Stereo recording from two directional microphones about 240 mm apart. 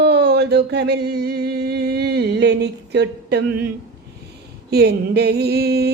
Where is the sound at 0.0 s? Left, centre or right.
Right.